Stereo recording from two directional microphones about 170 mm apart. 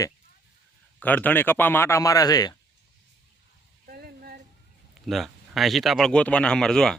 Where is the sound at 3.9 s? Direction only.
60° right (ahead or behind).